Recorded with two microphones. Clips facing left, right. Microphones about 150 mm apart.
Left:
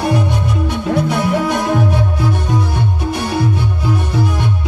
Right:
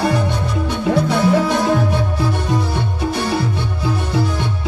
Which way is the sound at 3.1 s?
20° left (ahead or behind).